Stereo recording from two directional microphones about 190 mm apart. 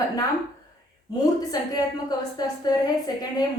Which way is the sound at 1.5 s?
20° left (ahead or behind).